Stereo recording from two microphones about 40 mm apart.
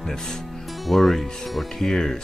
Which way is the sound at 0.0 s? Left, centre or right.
Centre.